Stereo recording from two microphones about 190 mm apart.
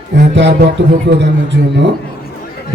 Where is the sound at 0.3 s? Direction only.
65° right (ahead or behind).